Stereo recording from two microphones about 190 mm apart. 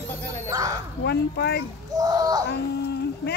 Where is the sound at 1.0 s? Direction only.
60° left (ahead or behind).